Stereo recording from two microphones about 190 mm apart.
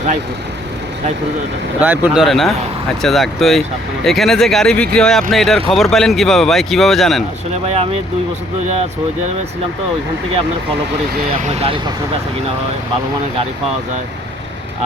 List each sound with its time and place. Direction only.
1.8 s speech: 5° right (ahead or behind)
11.6 s speech: 25° right (ahead or behind)